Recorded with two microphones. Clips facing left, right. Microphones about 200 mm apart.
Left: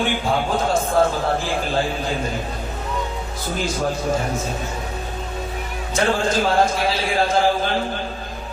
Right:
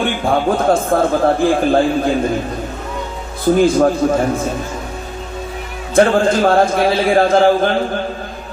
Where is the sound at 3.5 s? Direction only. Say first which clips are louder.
Right 12 dB; 55° right (ahead or behind).